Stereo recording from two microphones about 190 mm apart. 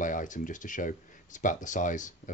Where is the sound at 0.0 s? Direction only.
45° left (ahead or behind).